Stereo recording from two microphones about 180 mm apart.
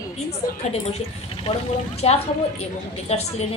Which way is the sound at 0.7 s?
35° left (ahead or behind).